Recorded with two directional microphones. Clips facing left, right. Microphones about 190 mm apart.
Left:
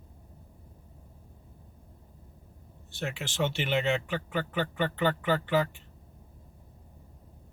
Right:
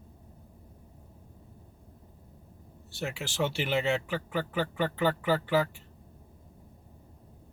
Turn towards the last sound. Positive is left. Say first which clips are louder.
# even
turn(degrees=-5)  # may be behind; listen again after turning